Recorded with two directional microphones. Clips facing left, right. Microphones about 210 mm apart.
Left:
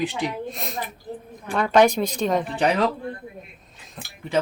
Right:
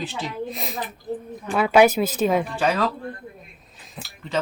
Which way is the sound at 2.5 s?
20° left (ahead or behind).